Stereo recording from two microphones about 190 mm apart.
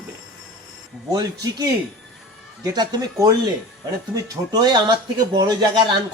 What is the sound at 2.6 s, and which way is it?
Speech, 20° right (ahead or behind).